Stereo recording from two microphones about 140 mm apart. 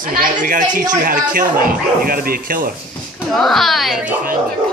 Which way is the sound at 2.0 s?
90° right.